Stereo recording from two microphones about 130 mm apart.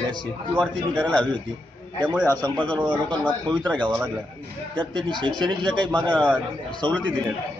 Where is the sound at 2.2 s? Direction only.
15° left (ahead or behind).